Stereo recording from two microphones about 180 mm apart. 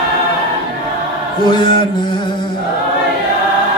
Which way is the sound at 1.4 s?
25° left (ahead or behind).